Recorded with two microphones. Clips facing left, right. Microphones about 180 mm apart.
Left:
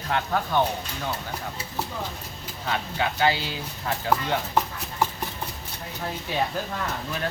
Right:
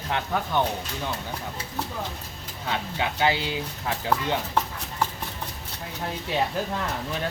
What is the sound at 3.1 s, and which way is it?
Speech, 20° right (ahead or behind).